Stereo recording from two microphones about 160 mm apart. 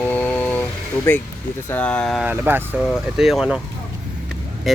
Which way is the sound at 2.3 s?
10° right (ahead or behind).